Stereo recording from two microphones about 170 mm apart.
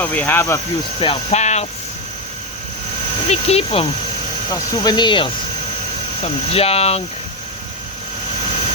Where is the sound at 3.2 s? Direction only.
35° left (ahead or behind).